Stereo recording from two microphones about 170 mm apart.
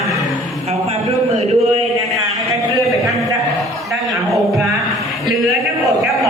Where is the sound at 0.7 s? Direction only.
40° right (ahead or behind).